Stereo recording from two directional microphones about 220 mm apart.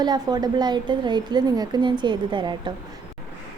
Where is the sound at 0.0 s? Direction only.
20° right (ahead or behind).